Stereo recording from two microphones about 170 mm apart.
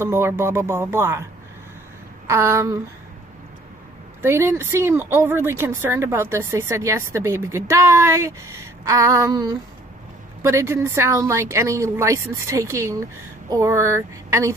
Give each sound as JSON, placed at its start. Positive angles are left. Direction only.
{"t": 0.0, "sound": "speech", "side_deg": -15}
{"t": 2.2, "sound": "speech", "side_deg": -15}
{"t": 4.2, "sound": "speech", "side_deg": -15}